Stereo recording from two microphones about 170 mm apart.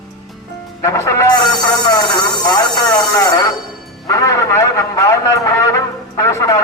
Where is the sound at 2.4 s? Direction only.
20° left (ahead or behind).